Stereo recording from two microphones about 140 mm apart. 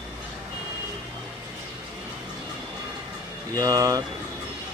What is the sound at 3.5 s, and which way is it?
Speech, 25° right (ahead or behind).